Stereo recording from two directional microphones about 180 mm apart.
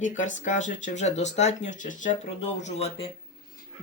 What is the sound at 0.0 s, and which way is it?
Speech, 45° left (ahead or behind).